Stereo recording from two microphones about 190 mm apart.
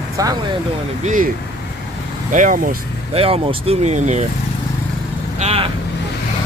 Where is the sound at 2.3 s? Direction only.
45° right (ahead or behind).